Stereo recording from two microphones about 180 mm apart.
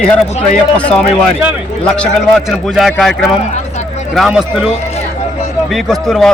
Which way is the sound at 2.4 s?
Centre (ahead or behind).